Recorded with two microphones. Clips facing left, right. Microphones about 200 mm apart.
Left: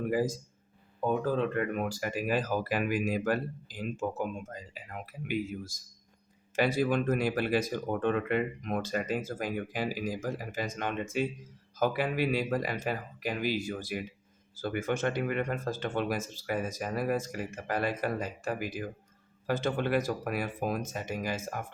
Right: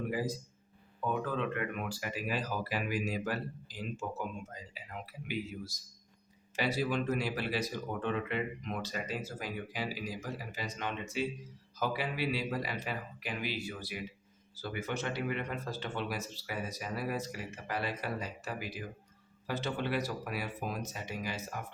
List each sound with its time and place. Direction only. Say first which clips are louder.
0.1 s speech: left 6 dB; 45° left (ahead or behind)